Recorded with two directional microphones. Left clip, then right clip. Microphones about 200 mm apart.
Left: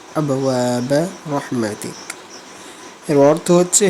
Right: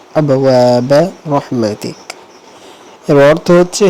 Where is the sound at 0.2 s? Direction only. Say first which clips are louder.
Right 9 dB; 10° right (ahead or behind).